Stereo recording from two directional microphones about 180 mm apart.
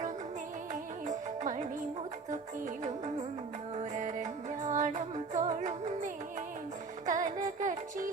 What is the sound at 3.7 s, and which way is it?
Music, 40° right (ahead or behind).